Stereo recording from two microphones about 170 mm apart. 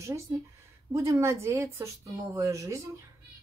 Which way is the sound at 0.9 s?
15° right (ahead or behind).